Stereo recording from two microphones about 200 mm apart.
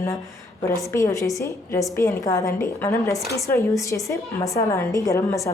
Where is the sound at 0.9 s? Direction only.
15° left (ahead or behind).